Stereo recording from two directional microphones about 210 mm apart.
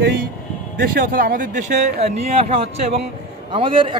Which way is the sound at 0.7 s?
40° right (ahead or behind).